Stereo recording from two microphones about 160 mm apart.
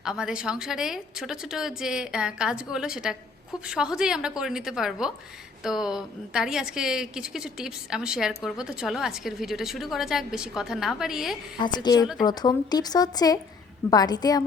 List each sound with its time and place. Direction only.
0.0 s a woman's voice: 5° right (ahead or behind)
11.6 s speech: 25° left (ahead or behind)